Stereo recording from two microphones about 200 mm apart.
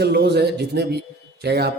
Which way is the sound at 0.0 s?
55° right (ahead or behind).